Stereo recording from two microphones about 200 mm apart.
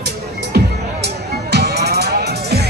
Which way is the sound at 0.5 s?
55° right (ahead or behind).